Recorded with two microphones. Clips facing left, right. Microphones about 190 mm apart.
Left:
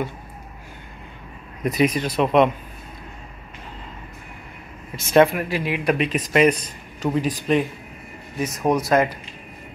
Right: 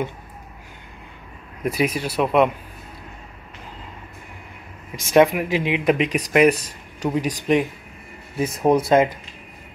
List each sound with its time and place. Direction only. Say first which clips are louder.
1.6 s speech: left 2 dB; 10° right (ahead or behind)
4.9 s speech: even; 15° right (ahead or behind)
8.4 s speech: right 3 dB; 30° right (ahead or behind)